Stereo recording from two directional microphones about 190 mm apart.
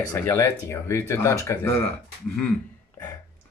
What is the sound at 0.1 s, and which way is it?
Speech, 15° left (ahead or behind).